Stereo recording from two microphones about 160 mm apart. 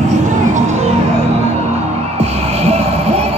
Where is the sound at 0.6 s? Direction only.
45° right (ahead or behind).